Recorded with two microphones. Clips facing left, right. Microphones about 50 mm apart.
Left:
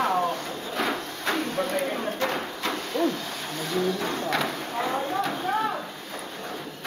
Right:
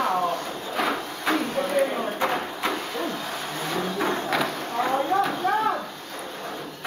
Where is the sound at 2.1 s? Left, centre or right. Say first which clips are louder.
Right 2 dB; centre.